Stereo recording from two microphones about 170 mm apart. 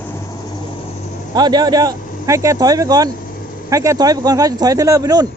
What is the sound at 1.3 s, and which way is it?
Speech, 25° right (ahead or behind).